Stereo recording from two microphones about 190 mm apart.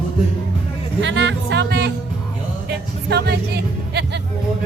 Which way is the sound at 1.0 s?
70° right (ahead or behind).